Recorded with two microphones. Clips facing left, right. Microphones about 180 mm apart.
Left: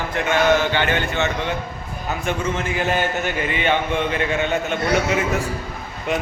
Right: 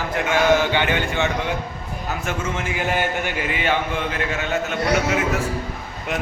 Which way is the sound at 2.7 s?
10° right (ahead or behind).